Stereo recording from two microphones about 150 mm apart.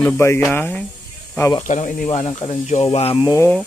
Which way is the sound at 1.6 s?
55° left (ahead or behind).